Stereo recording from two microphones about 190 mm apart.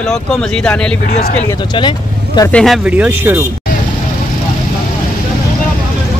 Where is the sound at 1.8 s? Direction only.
25° left (ahead or behind).